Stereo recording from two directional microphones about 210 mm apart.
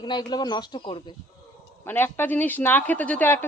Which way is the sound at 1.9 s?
10° left (ahead or behind).